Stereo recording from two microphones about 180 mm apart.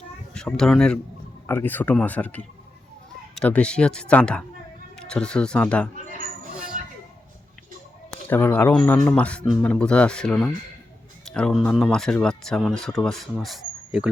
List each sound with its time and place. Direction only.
0.3 s speech: 5° left (ahead or behind)
6.8 s a sound: 45° right (ahead or behind)
8.1 s speech: 10° left (ahead or behind)